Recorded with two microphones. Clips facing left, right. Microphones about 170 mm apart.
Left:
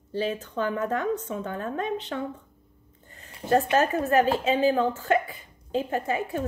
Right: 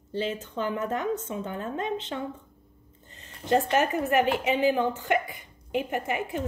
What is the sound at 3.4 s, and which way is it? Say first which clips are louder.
Speech: left 1 dB; 30° left (ahead or behind).